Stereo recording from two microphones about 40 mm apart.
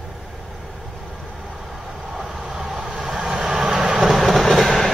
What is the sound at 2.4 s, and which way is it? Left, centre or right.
Vehicle, centre.